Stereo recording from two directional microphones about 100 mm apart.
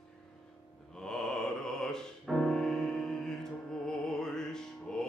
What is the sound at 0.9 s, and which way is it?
Mantra, 5° left (ahead or behind).